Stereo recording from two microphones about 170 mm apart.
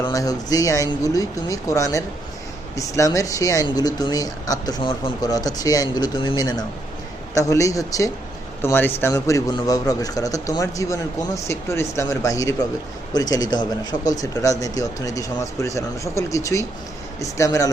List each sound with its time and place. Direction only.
0.0 s speech: 20° left (ahead or behind)